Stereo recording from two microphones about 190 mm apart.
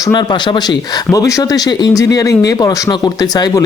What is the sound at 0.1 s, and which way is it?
Speech, 25° left (ahead or behind).